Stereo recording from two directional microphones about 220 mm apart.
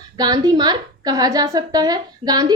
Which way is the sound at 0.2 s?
20° right (ahead or behind).